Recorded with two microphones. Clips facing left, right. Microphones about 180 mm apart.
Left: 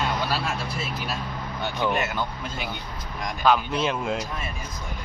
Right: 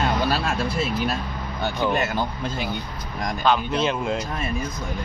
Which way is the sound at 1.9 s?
35° right (ahead or behind).